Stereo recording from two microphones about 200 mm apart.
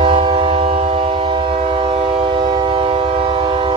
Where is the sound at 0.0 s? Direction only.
25° right (ahead or behind).